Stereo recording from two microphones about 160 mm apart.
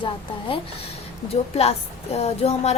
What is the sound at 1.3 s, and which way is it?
Speech, 40° left (ahead or behind).